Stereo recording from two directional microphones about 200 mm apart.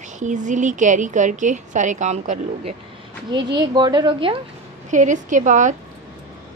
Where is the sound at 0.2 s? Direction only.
40° right (ahead or behind).